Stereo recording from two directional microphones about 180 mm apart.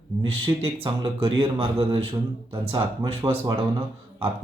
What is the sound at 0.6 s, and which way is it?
Speech, 30° right (ahead or behind).